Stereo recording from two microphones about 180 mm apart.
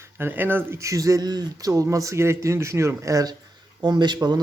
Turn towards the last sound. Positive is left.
turn(degrees=-25)  # may be behind; listen again after turning